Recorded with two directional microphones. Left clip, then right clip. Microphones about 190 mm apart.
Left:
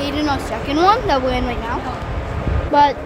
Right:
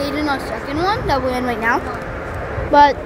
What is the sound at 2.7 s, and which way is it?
Speech, 10° right (ahead or behind).